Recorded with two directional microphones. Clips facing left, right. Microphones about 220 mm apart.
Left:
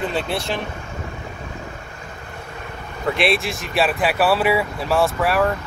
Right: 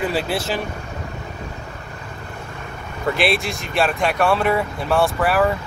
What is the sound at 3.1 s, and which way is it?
Speech, centre (ahead or behind).